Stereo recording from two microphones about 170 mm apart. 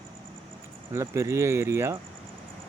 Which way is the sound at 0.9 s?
15° right (ahead or behind).